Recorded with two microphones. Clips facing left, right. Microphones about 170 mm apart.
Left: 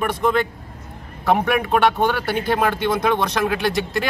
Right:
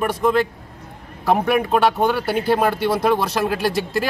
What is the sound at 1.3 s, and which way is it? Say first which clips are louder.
Speech: right 1 dB; centre (ahead or behind).